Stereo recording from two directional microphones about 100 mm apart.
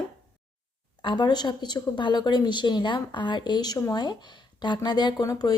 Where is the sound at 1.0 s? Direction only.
50° left (ahead or behind).